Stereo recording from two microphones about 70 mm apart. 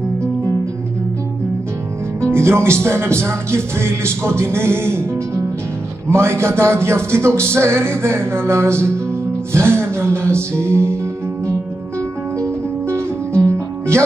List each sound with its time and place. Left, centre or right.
2.2 s speech: right
12.9 s music: right